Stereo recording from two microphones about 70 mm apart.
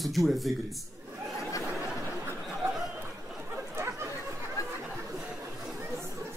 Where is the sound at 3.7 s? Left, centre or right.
Right.